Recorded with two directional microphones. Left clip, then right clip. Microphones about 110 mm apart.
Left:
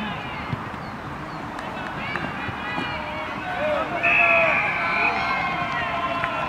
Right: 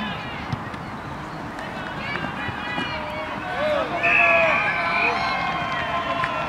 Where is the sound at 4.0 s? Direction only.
25° right (ahead or behind).